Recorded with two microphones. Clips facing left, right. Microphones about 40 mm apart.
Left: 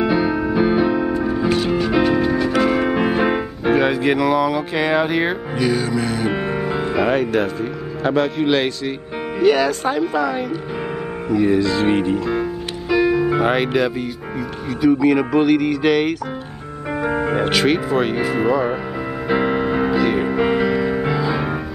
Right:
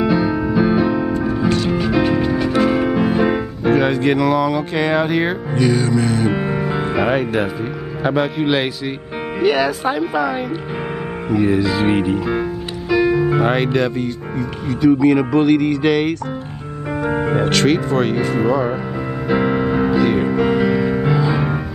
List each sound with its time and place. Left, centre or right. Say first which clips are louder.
0.0 s music: right 1 dB; centre
2.9 s music: right 1 dB; centre
8.0 s speech: even; centre
12.9 s music: right 1 dB; centre
13.7 s speech: right 1 dB; centre
17.3 s music: right 2 dB; centre
17.6 s speech: right 1 dB; centre
19.2 s piano: right 1 dB; centre
20.3 s music: right 1 dB; centre